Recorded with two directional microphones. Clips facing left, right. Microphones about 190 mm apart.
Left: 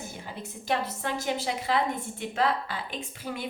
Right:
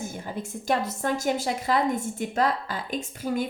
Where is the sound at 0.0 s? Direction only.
45° right (ahead or behind).